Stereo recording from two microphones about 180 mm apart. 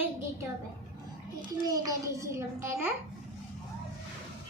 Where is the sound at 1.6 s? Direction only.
20° right (ahead or behind).